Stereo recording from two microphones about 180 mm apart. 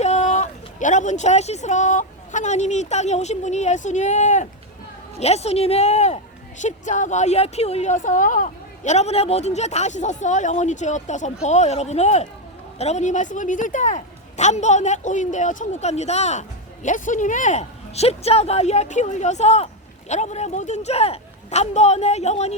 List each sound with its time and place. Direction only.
0.0 s speech: 40° left (ahead or behind)